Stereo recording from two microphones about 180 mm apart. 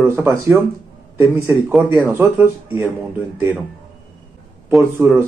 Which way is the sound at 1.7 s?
5° right (ahead or behind).